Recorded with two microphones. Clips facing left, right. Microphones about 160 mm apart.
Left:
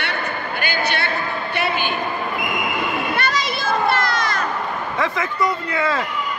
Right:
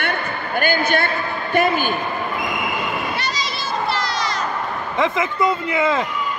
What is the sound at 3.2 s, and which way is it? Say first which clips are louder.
Children playing: left 3 dB; 55° left (ahead or behind).